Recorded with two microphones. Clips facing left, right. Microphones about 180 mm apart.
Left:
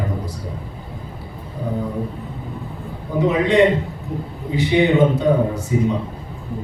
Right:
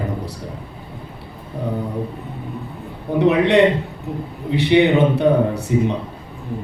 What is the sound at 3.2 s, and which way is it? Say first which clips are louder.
A man's voice: right 1 dB; 65° right (ahead or behind).